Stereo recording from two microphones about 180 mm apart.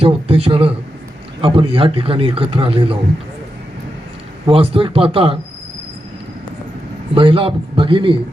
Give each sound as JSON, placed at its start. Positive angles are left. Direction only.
{"t": 0.0, "sound": "a man's voice", "side_deg": -35}
{"t": 4.4, "sound": "speech", "side_deg": -30}
{"t": 7.1, "sound": "a man's voice", "side_deg": -30}